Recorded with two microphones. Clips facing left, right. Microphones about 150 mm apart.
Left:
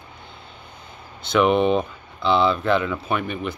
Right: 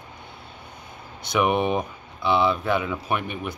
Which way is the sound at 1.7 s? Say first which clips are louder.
Left 4 dB; 10° right (ahead or behind).